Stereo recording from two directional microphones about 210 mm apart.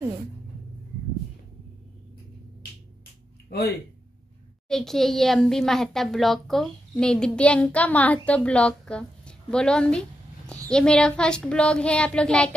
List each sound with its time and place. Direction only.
3.4 s speech: 50° left (ahead or behind)
4.6 s a child's voice: centre (ahead or behind)